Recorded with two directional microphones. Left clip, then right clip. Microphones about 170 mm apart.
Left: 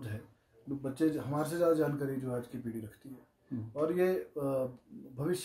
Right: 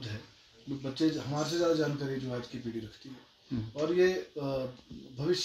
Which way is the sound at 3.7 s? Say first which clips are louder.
Right 3 dB; 10° left (ahead or behind).